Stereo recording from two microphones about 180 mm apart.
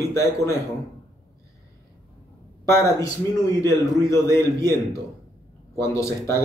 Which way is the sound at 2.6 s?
15° left (ahead or behind).